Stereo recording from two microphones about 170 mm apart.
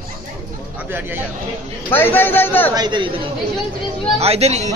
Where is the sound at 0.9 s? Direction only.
10° right (ahead or behind).